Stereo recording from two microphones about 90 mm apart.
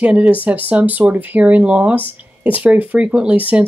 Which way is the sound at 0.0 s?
15° right (ahead or behind).